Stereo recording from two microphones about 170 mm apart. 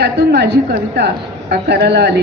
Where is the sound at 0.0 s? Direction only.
75° right (ahead or behind).